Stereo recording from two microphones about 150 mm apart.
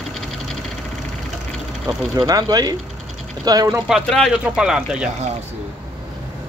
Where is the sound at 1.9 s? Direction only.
25° right (ahead or behind).